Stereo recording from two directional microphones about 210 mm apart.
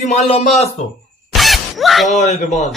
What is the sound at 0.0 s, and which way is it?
Speech, 30° left (ahead or behind).